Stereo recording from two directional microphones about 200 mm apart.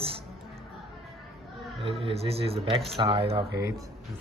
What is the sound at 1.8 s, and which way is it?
Speech, 30° right (ahead or behind).